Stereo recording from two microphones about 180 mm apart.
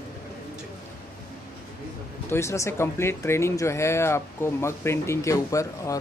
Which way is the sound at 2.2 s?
15° left (ahead or behind).